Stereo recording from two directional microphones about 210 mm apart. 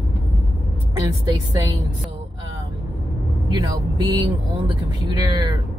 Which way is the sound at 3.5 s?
20° right (ahead or behind).